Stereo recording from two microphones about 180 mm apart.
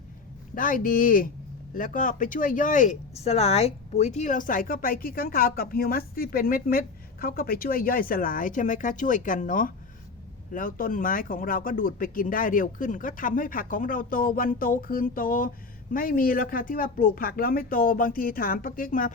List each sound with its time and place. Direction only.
0.5 s speech: 50° left (ahead or behind)